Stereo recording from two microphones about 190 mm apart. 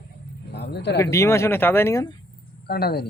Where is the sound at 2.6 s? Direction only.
55° left (ahead or behind).